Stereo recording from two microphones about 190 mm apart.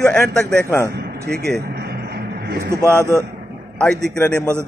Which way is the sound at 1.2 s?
55° right (ahead or behind).